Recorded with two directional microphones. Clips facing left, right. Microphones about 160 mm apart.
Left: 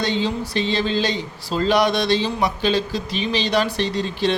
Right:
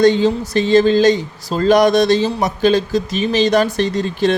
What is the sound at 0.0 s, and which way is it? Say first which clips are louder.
Speech: right 10 dB; 45° right (ahead or behind).